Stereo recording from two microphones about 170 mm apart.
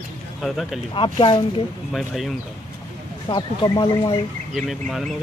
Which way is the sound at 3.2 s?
25° left (ahead or behind).